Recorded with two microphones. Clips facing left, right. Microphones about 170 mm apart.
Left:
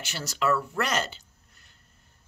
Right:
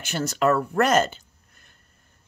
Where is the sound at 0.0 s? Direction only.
55° right (ahead or behind).